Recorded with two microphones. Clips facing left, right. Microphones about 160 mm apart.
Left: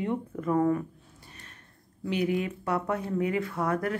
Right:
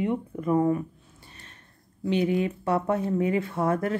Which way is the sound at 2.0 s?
25° right (ahead or behind).